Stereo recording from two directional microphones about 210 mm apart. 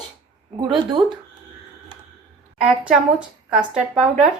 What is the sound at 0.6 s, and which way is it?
Speech, 20° right (ahead or behind).